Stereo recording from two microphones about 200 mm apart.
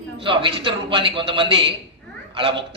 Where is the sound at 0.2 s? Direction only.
25° right (ahead or behind).